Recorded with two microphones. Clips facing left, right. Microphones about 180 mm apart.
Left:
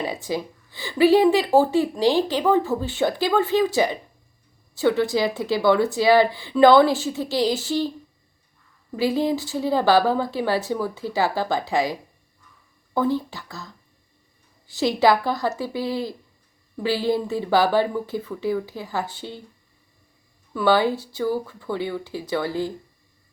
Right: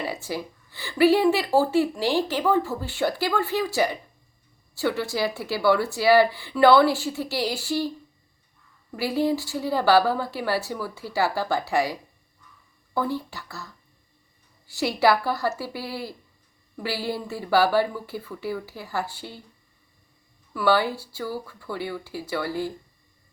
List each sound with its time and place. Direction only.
0.0 s speech: 15° left (ahead or behind)
9.0 s speech: 15° left (ahead or behind)
14.9 s speech: 15° left (ahead or behind)
17.1 s speech: 20° left (ahead or behind)
20.5 s speech: 20° left (ahead or behind)